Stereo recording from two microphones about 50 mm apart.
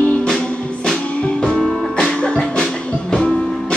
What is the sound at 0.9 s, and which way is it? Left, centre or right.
Music, centre.